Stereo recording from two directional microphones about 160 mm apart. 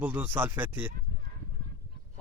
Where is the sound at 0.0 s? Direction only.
10° right (ahead or behind).